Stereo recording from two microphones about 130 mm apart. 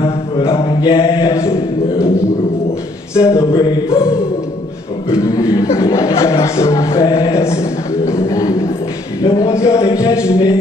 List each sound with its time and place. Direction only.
0.6 s mantra: 40° left (ahead or behind)
1.2 s a sound: 25° left (ahead or behind)
3.2 s music: 20° left (ahead or behind)
5.2 s speech: 25° left (ahead or behind)
9.4 s a sound: 25° left (ahead or behind)
10.1 s music: 10° right (ahead or behind)